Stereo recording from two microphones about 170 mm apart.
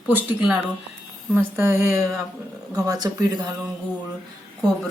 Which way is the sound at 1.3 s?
10° right (ahead or behind).